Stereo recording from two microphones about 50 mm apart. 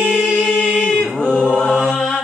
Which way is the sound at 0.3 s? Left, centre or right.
Centre.